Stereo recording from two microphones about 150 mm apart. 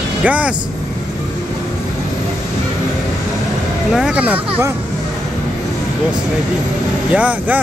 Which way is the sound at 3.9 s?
5° right (ahead or behind).